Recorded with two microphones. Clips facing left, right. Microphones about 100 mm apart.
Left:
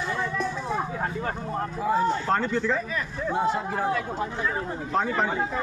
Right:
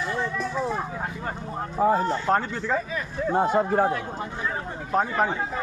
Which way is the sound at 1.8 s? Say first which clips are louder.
Right 4 dB; 45° right (ahead or behind).